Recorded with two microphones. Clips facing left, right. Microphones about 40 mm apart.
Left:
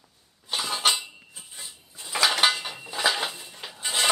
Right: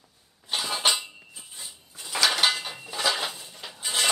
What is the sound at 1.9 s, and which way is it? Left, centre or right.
Dishes, left.